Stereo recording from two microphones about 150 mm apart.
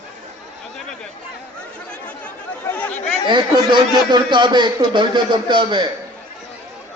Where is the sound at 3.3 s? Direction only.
30° right (ahead or behind).